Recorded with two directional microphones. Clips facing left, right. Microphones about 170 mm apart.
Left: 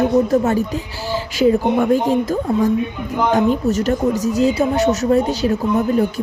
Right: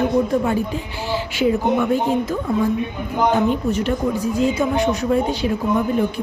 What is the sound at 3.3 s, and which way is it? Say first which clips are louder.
A woman's voice: left 6 dB; 45° left (ahead or behind).